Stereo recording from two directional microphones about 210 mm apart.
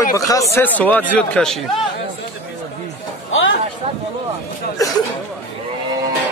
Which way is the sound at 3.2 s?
65° left (ahead or behind).